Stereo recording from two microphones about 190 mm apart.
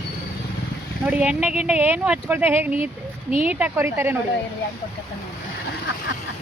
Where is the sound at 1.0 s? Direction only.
5° right (ahead or behind).